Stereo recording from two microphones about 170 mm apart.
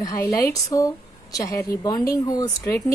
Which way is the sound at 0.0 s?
20° left (ahead or behind).